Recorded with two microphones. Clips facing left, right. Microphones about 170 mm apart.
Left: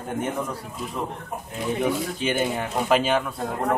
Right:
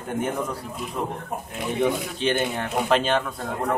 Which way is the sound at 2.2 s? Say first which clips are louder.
Right 2 dB; 5° left (ahead or behind).